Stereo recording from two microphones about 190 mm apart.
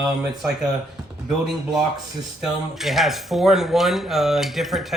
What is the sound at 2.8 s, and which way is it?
Speech, centre (ahead or behind).